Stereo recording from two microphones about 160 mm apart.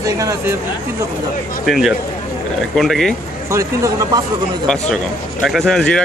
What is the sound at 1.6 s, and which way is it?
Speech, centre (ahead or behind).